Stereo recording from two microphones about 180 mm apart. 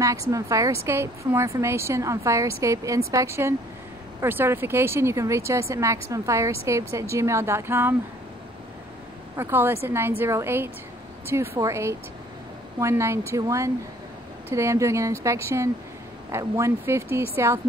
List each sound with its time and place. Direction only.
0.0 s speech: 15° right (ahead or behind)
9.4 s speech: 10° right (ahead or behind)